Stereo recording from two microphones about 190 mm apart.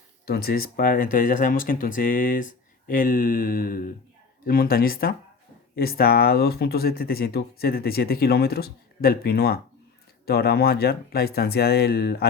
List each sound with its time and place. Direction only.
0.3 s speech: 55° left (ahead or behind)